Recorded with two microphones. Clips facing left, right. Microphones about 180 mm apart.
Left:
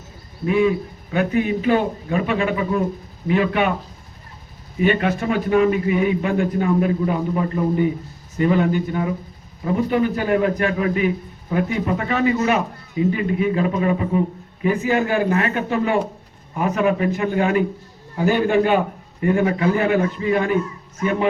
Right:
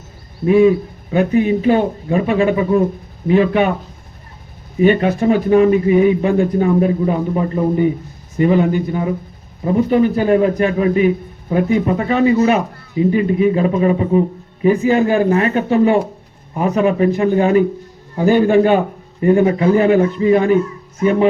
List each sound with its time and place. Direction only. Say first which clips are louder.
0.4 s a man's voice: right 7 dB; 30° right (ahead or behind)
4.8 s a man's voice: right 6 dB; 30° right (ahead or behind)